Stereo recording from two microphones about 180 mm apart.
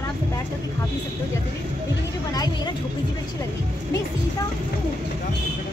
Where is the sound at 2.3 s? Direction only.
20° left (ahead or behind).